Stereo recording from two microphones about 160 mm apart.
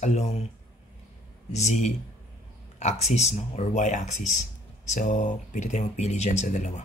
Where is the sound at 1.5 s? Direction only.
45° left (ahead or behind).